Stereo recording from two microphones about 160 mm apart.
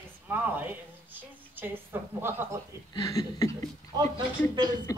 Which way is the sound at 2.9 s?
20° left (ahead or behind).